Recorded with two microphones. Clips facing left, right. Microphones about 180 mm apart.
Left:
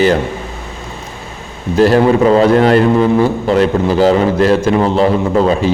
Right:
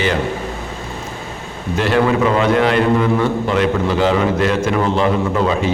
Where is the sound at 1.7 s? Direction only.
40° left (ahead or behind).